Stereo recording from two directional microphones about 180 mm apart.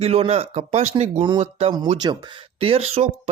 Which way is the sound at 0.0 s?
35° right (ahead or behind).